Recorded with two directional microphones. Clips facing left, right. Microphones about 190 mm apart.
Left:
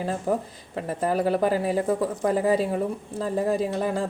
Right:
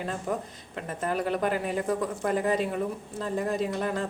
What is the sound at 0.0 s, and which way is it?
Speech, 35° left (ahead or behind).